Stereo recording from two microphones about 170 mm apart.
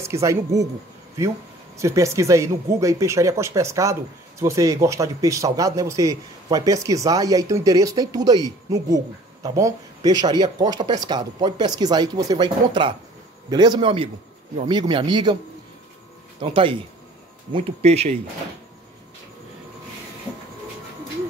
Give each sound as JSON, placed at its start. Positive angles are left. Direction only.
{"t": 0.0, "sound": "speech", "side_deg": -15}
{"t": 1.8, "sound": "a man's voice", "side_deg": -20}
{"t": 16.3, "sound": "speech", "side_deg": -30}